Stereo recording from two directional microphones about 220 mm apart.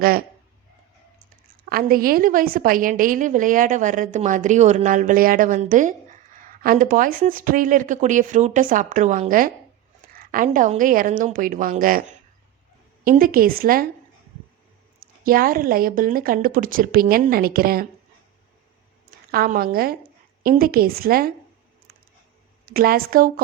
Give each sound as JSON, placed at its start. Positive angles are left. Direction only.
{"t": 0.0, "sound": "a woman's voice", "side_deg": -40}
{"t": 1.7, "sound": "a woman's voice", "side_deg": -40}
{"t": 13.1, "sound": "a woman's voice", "side_deg": -40}
{"t": 15.0, "sound": "a woman's voice", "side_deg": -40}
{"t": 19.3, "sound": "a woman's voice", "side_deg": -40}
{"t": 22.7, "sound": "a woman's voice", "side_deg": -40}